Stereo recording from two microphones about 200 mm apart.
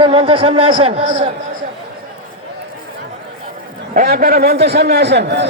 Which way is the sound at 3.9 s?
45° right (ahead or behind).